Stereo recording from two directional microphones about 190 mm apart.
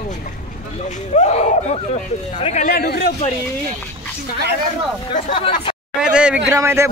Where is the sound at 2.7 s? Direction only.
55° left (ahead or behind).